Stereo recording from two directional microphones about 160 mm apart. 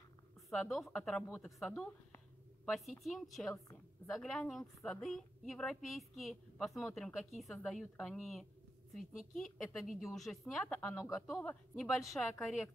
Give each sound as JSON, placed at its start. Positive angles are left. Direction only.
{"t": 0.5, "sound": "speech", "side_deg": 0}
{"t": 1.7, "sound": "a woman's voice", "side_deg": 15}
{"t": 2.6, "sound": "speech", "side_deg": 0}
{"t": 3.5, "sound": "a woman's voice", "side_deg": 20}
{"t": 4.1, "sound": "speech", "side_deg": 5}